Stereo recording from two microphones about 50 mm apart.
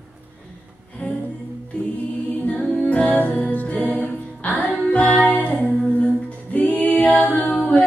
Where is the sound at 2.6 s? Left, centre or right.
Centre.